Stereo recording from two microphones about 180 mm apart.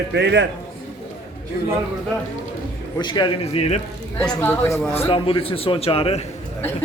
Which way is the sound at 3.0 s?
25° left (ahead or behind).